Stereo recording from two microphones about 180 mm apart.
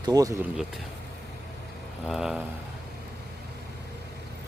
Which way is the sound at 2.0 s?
5° right (ahead or behind).